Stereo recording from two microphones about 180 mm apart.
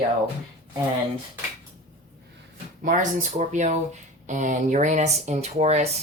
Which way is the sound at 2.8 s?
45° right (ahead or behind).